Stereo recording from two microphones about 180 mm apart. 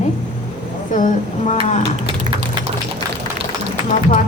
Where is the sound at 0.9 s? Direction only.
45° left (ahead or behind).